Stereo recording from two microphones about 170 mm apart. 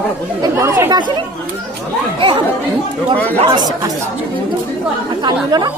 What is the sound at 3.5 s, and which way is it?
Speech, 25° right (ahead or behind).